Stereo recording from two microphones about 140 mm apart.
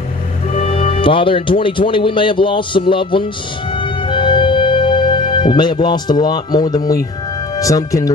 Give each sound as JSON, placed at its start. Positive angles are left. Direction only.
{"t": 0.5, "sound": "speech", "side_deg": 45}
{"t": 3.8, "sound": "music", "side_deg": 35}
{"t": 7.5, "sound": "speech", "side_deg": 25}